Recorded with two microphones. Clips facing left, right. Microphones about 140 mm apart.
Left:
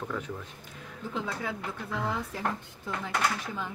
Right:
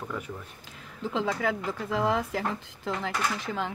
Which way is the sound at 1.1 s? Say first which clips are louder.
Right 6 dB; 90° right.